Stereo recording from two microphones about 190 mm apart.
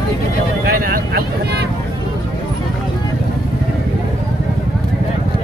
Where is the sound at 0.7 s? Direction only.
50° right (ahead or behind).